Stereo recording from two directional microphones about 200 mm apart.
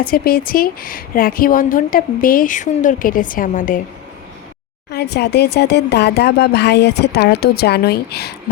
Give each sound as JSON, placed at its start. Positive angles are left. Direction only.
{"t": 0.1, "sound": "a woman's voice", "side_deg": 50}
{"t": 4.9, "sound": "speech", "side_deg": 55}